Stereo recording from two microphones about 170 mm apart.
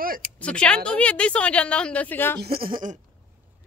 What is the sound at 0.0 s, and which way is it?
Speech, 55° right (ahead or behind).